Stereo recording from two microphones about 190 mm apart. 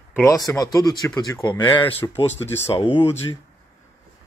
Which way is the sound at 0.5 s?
20° left (ahead or behind).